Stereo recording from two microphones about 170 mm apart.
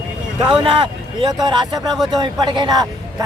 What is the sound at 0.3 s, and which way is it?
Speech, 30° right (ahead or behind).